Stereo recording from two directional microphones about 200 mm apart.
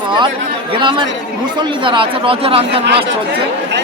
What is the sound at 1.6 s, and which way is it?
Speech, 25° right (ahead or behind).